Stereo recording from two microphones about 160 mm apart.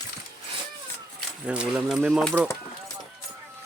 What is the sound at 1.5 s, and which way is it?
Speech, 5° right (ahead or behind).